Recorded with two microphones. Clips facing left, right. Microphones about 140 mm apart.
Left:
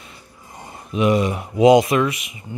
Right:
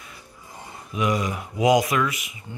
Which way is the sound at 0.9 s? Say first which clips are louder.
Left 6 dB; 25° left (ahead or behind).